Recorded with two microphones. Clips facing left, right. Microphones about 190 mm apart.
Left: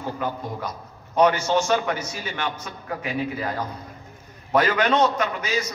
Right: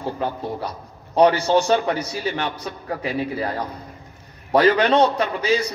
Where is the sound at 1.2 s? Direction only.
35° right (ahead or behind).